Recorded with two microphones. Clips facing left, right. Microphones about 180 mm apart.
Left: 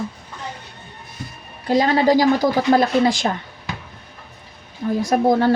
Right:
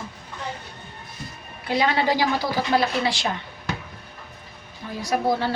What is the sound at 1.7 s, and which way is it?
A woman's voice, 40° left (ahead or behind).